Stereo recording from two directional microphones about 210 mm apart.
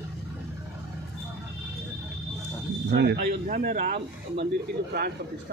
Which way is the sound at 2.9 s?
55° right (ahead or behind).